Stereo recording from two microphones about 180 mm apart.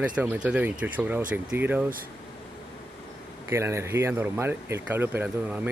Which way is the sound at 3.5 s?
15° right (ahead or behind).